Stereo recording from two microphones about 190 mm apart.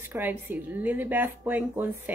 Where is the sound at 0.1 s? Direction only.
10° right (ahead or behind).